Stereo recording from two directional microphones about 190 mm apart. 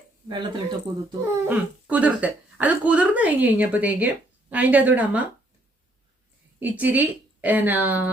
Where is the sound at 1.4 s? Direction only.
10° right (ahead or behind).